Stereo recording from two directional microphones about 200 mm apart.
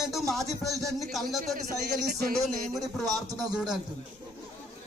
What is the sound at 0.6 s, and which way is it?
Speech, centre (ahead or behind).